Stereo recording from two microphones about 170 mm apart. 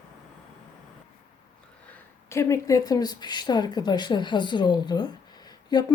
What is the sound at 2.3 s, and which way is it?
Speech, 15° left (ahead or behind).